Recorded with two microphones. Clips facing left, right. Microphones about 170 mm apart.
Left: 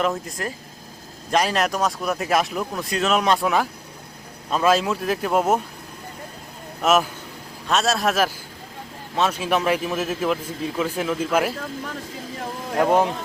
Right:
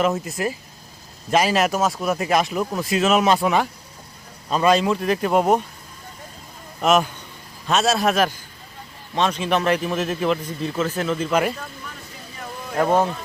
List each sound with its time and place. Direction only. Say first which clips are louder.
0.0 s speech: right 3 dB; 5° right (ahead or behind)
6.8 s a man's voice: right 1 dB; 5° left (ahead or behind)
11.5 s speech: left 5 dB; 90° left
12.8 s a man's voice: even; 15° left (ahead or behind)